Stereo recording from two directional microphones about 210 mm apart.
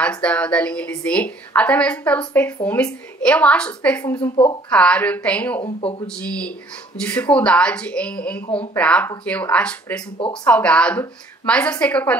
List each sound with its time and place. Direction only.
0.0 s a woman's voice: 5° left (ahead or behind)
4.0 s a woman's voice: 15° left (ahead or behind)
4.6 s a woman's voice: 5° left (ahead or behind)
5.8 s speech: 25° left (ahead or behind)
6.1 s a woman's voice: 5° left (ahead or behind)